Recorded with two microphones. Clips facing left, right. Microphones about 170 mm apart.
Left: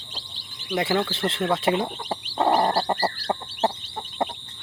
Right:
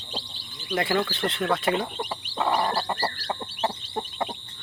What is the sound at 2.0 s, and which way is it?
Chicken, 35° left (ahead or behind).